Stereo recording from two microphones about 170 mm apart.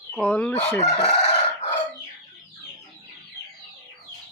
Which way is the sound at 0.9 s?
40° left (ahead or behind).